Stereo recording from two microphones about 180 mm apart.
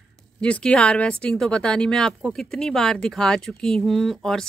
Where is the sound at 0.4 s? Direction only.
5° left (ahead or behind).